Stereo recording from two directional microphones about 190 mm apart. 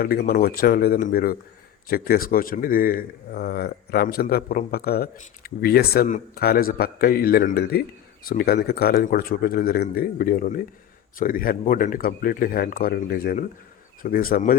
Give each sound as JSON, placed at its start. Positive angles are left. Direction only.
{"t": 0.0, "sound": "speech", "side_deg": 55}